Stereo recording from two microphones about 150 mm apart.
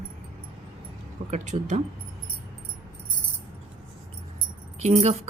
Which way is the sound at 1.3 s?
55° right (ahead or behind).